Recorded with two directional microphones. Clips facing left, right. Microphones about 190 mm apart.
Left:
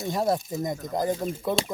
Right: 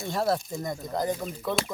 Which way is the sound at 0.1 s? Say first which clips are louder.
Left 1 dB; 15° left (ahead or behind).